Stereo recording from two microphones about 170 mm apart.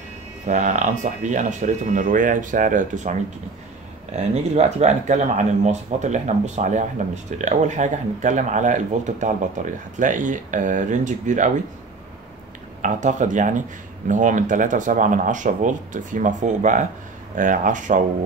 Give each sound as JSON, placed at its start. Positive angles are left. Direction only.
{"t": 0.5, "sound": "speech", "side_deg": -45}
{"t": 12.8, "sound": "speech", "side_deg": -45}